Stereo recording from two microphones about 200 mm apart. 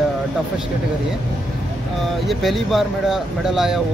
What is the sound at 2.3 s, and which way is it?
Speech, centre (ahead or behind).